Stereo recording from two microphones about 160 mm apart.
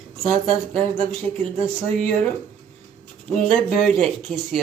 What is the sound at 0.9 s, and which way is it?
Speech, 35° right (ahead or behind).